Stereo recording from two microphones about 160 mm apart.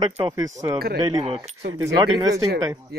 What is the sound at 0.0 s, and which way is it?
Speech, 25° right (ahead or behind).